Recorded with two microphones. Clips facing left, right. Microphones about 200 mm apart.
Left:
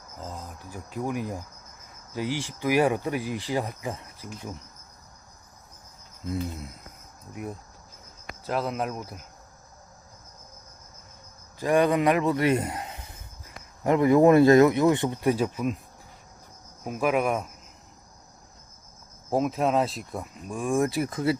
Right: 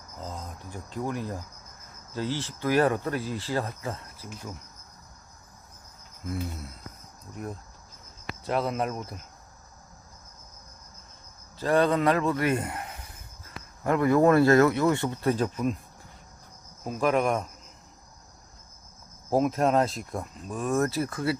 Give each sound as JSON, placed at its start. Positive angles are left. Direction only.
{"t": 0.2, "sound": "speech", "side_deg": 5}
{"t": 6.2, "sound": "cricket", "side_deg": 20}
{"t": 8.4, "sound": "speech", "side_deg": 0}
{"t": 11.6, "sound": "speech", "side_deg": 15}
{"t": 16.8, "sound": "speech", "side_deg": 10}
{"t": 19.3, "sound": "speech", "side_deg": 0}